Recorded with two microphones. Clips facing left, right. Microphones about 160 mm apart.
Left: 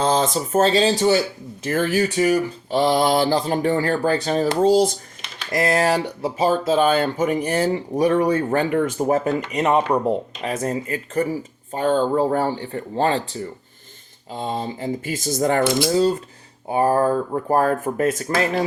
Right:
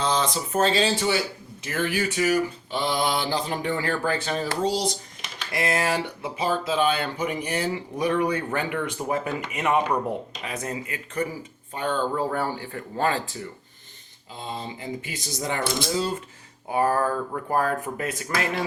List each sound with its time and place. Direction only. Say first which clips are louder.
0.0 s speech: left 5 dB; 40° left (ahead or behind)
2.7 s speech: left 8 dB; 45° left (ahead or behind)
4.6 s speech: left 9 dB; 50° left (ahead or behind); by 10.2 s 30° left (ahead or behind)
10.4 s speech: left 7 dB; 45° left (ahead or behind)
14.3 s speech: left 8 dB; 45° left (ahead or behind)
16.0 s speech: left 9 dB; 40° left (ahead or behind)
17.5 s speech: left 6 dB; 45° left (ahead or behind)